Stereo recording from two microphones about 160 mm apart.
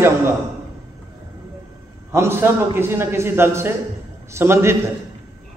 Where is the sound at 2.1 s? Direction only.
15° right (ahead or behind).